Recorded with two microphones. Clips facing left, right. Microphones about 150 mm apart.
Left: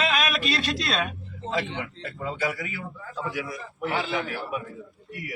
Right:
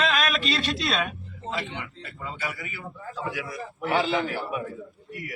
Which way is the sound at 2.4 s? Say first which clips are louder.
Left 6 dB; 90° left.